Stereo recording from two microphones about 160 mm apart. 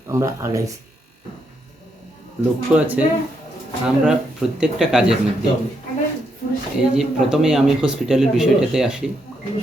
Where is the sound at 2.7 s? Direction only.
10° right (ahead or behind).